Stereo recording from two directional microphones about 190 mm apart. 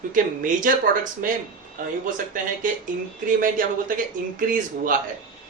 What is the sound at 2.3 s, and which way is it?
Speech, 45° right (ahead or behind).